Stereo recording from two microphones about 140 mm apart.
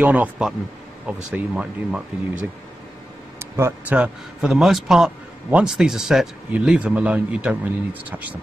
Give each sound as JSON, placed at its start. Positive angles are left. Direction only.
{"t": 0.0, "sound": "a man's voice", "side_deg": -10}
{"t": 3.3, "sound": "speech", "side_deg": -20}
{"t": 4.0, "sound": "a man's voice", "side_deg": -5}